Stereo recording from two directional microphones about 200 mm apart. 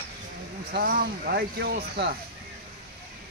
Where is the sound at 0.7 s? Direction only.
45° right (ahead or behind).